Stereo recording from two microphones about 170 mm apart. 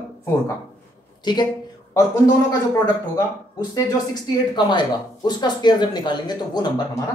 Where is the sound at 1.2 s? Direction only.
25° left (ahead or behind).